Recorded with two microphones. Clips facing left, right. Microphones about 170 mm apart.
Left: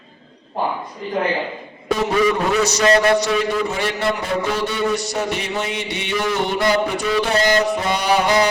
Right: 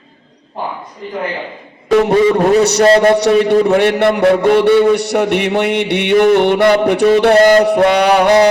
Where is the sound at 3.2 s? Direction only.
65° right (ahead or behind).